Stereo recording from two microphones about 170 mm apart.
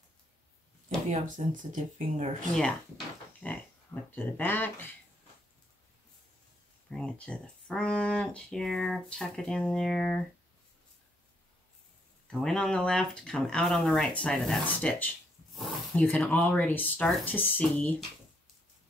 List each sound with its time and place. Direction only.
0.8 s speech: 45° right (ahead or behind)
3.4 s speech: 10° left (ahead or behind)
6.9 s speech: 5° left (ahead or behind)
12.3 s speech: 5° left (ahead or behind)